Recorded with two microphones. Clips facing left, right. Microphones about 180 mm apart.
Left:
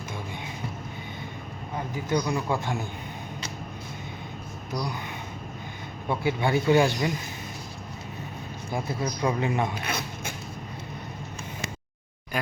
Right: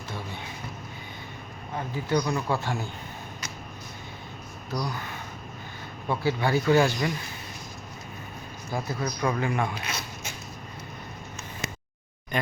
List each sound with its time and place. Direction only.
2.0 s a man's voice: 15° left (ahead or behind)
4.7 s a man's voice: 15° left (ahead or behind)
6.1 s speech: 20° left (ahead or behind)
8.7 s speech: 25° left (ahead or behind)
9.8 s speech: 55° left (ahead or behind)